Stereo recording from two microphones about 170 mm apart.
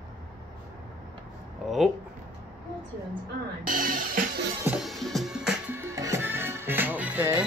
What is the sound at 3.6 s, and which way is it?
Speech, 55° right (ahead or behind).